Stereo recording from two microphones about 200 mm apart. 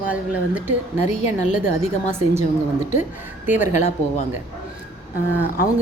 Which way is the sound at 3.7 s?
35° left (ahead or behind).